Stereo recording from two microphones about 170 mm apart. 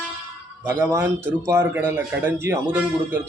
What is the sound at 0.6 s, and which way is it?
A man's voice, 15° right (ahead or behind).